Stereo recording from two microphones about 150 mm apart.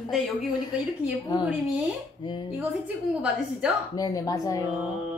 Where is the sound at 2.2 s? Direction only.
30° left (ahead or behind).